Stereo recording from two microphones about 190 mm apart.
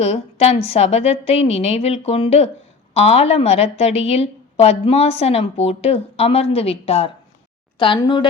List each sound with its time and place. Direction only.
0.0 s a woman's voice: 35° left (ahead or behind)